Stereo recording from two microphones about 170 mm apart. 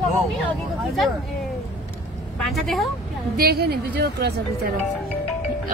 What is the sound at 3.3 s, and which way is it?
A woman's voice, 65° right (ahead or behind).